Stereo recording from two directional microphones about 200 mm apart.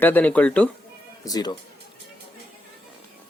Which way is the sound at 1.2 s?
20° left (ahead or behind).